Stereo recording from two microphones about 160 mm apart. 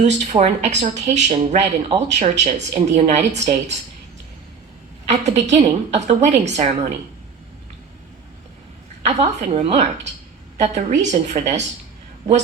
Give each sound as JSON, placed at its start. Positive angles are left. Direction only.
{"t": 0.0, "sound": "speech", "side_deg": -45}
{"t": 5.0, "sound": "speech", "side_deg": -45}
{"t": 9.0, "sound": "speech", "side_deg": -45}